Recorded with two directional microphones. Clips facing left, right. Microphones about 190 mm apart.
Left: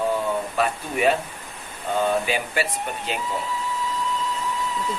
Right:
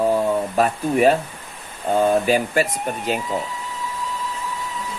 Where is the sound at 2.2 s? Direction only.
45° right (ahead or behind).